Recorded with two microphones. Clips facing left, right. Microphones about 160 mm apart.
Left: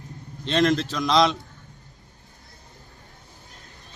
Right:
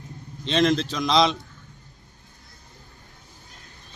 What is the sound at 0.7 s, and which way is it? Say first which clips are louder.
Speech: even; 20° right (ahead or behind).